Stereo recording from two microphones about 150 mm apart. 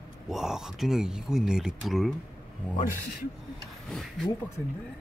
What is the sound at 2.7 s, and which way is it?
Speech, 65° left (ahead or behind).